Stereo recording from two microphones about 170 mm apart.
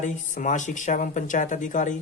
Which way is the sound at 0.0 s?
45° left (ahead or behind).